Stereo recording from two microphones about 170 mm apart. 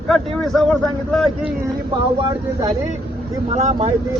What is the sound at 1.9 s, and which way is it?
A man's voice, 30° right (ahead or behind).